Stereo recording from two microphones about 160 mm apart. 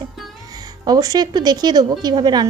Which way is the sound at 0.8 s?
25° right (ahead or behind).